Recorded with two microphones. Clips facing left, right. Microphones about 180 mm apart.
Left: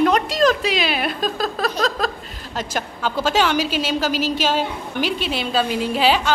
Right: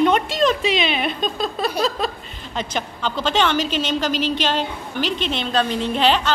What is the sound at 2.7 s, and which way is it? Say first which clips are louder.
A woman's voice: left 2 dB; 5° left (ahead or behind).